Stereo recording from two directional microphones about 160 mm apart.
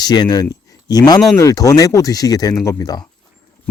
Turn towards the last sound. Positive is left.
turn(degrees=20)  # may be behind; listen again after turning